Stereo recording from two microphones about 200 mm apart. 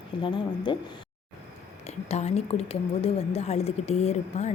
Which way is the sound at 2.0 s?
30° left (ahead or behind).